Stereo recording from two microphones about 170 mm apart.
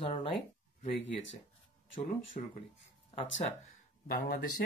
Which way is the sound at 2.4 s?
45° left (ahead or behind).